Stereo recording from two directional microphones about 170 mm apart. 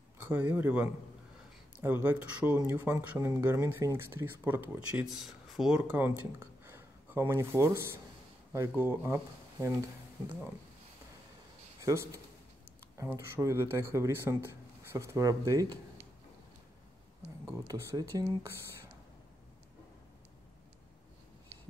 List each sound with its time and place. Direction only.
0.2 s speech: 10° right (ahead or behind)
11.8 s speech: 15° right (ahead or behind)
17.5 s speech: 20° right (ahead or behind)